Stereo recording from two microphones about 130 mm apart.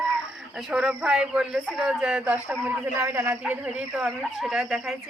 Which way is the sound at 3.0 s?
20° right (ahead or behind).